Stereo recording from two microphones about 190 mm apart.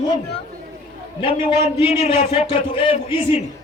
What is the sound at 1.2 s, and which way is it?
A man's voice, 30° left (ahead or behind).